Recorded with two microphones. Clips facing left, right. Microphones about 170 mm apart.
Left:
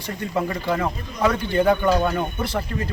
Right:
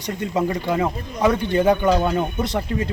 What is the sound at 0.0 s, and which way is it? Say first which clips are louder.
Speech: right 3 dB; 20° right (ahead or behind).